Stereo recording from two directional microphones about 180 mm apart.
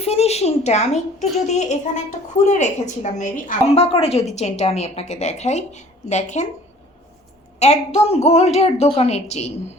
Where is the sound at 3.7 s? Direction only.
35° left (ahead or behind).